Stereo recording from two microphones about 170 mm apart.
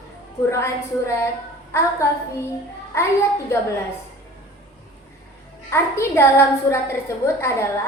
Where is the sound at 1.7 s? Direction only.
15° left (ahead or behind).